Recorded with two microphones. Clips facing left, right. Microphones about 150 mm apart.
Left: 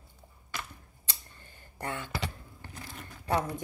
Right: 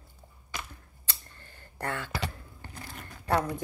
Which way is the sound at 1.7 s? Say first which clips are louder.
Right 2 dB; 20° left (ahead or behind).